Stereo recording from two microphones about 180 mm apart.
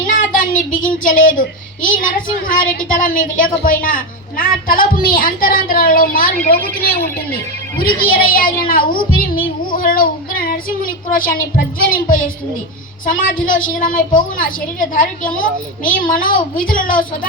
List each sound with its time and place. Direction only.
0.1 s a sound: 50° left (ahead or behind)
1.0 s a woman's voice: 50° left (ahead or behind)
8.1 s a woman's voice: 55° left (ahead or behind)